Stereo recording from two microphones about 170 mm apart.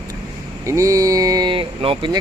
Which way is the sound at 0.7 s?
20° right (ahead or behind).